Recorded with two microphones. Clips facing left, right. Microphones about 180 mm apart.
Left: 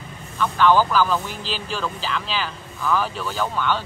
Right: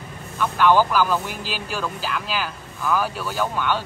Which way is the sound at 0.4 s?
10° right (ahead or behind).